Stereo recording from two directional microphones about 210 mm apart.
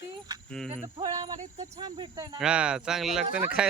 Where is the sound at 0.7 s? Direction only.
25° right (ahead or behind).